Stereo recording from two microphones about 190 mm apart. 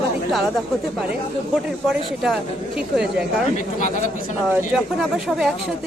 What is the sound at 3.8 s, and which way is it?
Speech, 40° left (ahead or behind).